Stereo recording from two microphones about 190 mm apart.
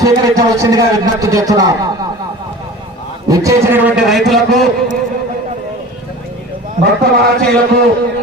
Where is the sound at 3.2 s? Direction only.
15° right (ahead or behind); by 4.7 s centre (ahead or behind).